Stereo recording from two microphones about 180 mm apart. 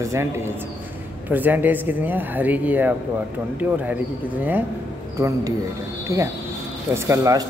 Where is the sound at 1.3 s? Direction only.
10° right (ahead or behind).